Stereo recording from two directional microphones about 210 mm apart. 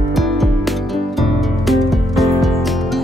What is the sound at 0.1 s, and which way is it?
Music, centre (ahead or behind).